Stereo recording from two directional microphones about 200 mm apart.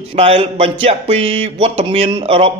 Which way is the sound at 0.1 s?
30° right (ahead or behind).